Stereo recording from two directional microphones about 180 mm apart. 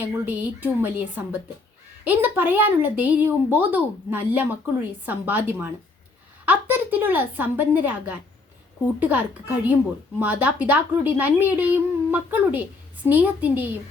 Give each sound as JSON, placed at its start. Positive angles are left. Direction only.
{"t": 0.0, "sound": "speech", "side_deg": -10}